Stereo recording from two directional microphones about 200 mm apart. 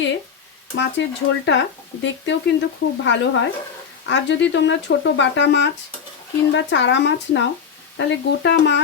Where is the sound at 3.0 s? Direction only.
65° left (ahead or behind).